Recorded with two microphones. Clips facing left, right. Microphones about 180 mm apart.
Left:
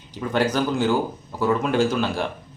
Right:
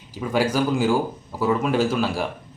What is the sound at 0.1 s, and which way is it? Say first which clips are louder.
A man's voice: even; 5° right (ahead or behind).